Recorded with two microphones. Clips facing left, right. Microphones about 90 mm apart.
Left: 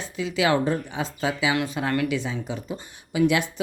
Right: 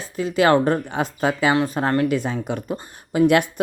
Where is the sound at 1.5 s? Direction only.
40° right (ahead or behind).